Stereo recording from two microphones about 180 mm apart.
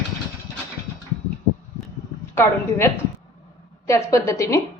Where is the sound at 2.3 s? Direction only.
15° left (ahead or behind).